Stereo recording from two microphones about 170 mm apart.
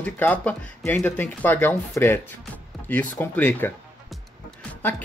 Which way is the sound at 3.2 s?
10° left (ahead or behind).